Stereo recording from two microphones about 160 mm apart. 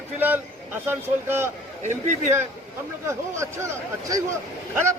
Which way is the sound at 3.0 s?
15° right (ahead or behind).